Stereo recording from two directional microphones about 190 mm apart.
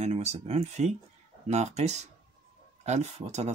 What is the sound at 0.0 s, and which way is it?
Speech, 35° right (ahead or behind).